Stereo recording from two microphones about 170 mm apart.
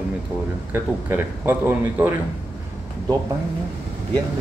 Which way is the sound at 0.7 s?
15° right (ahead or behind).